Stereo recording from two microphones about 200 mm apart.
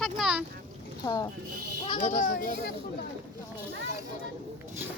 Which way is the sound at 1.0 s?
10° left (ahead or behind).